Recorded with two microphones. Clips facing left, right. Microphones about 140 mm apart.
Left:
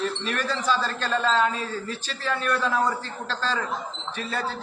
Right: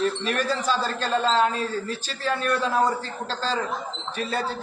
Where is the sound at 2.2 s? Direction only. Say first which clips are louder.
Right 1 dB; 35° right (ahead or behind).